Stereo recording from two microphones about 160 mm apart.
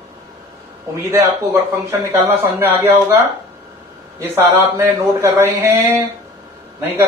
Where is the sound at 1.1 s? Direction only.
15° right (ahead or behind).